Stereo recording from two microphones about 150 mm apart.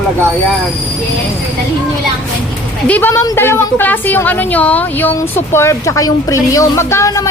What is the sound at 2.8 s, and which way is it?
A woman's voice, 10° left (ahead or behind).